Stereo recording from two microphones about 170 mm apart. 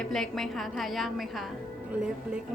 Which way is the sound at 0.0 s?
Centre (ahead or behind).